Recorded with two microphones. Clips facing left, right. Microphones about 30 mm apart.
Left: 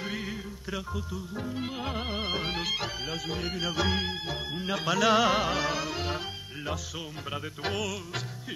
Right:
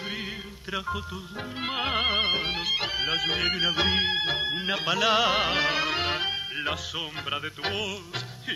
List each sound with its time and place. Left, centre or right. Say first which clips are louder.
0.7 s music: right 6 dB; right
1.6 s music: right 10 dB; right
2.4 s music: right 3 dB; centre
2.8 s music: right 7 dB; right
3.6 s music: right 3 dB; right
4.1 s music: right 8 dB; right
4.6 s music: left 1 dB; right
5.4 s music: right 4 dB; right